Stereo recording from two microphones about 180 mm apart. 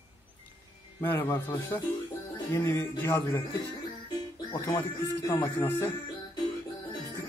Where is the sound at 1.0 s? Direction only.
15° left (ahead or behind).